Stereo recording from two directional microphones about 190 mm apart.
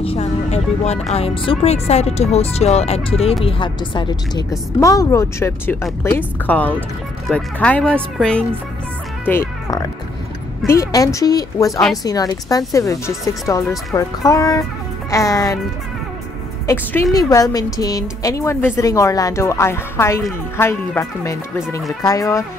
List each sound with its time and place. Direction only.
0.0 s speech: 35° left (ahead or behind); by 8.5 s 5° left (ahead or behind)
9.2 s music: 10° left (ahead or behind)
10.7 s speech: 15° left (ahead or behind)
16.6 s speech: 15° left (ahead or behind)